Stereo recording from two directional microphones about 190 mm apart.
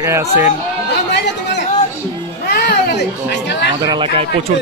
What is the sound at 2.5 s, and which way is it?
Music, 55° left (ahead or behind).